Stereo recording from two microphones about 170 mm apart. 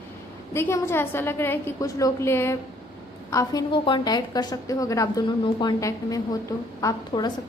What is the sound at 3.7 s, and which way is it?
A woman's voice, 30° left (ahead or behind).